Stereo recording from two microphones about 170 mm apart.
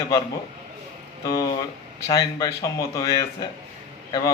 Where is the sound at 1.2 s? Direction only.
20° left (ahead or behind).